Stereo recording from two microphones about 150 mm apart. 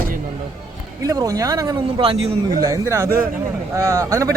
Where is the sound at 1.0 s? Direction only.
25° right (ahead or behind).